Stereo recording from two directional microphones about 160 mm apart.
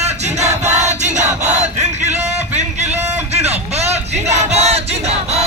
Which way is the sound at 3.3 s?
40° right (ahead or behind).